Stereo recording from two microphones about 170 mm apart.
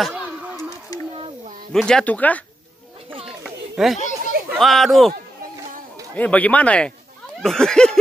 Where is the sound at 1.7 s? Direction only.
5° left (ahead or behind).